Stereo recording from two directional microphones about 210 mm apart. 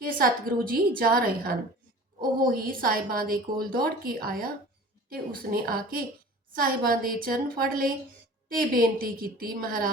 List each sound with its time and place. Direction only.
0.2 s a woman's voice: 45° right (ahead or behind)